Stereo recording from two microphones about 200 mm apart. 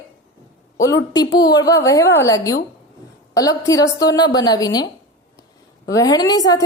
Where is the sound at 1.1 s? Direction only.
20° left (ahead or behind).